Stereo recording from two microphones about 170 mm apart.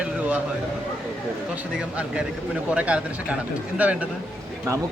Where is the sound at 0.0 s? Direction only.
10° right (ahead or behind).